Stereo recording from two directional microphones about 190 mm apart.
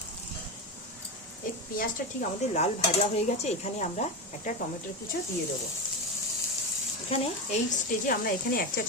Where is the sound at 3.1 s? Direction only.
35° left (ahead or behind).